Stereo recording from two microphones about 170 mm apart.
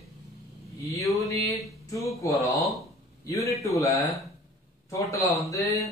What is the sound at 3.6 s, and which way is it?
A man's voice, 15° left (ahead or behind).